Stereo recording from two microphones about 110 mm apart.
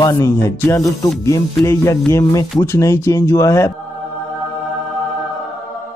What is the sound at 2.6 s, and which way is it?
Speech, 25° left (ahead or behind).